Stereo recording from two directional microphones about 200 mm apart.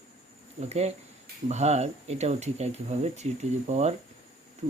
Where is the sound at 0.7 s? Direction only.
35° right (ahead or behind).